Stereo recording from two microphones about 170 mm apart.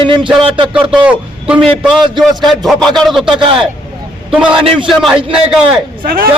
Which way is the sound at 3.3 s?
30° right (ahead or behind).